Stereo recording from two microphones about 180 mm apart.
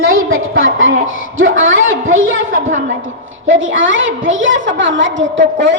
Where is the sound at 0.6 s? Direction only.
90° right.